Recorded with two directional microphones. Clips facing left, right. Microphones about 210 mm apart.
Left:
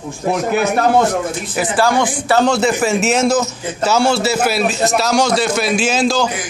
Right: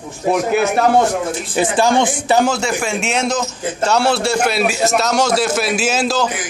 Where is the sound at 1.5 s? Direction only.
25° right (ahead or behind).